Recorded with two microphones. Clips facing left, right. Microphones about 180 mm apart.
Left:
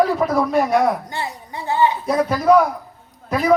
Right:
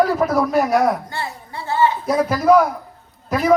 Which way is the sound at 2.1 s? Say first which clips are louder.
Right 1 dB; centre (ahead or behind).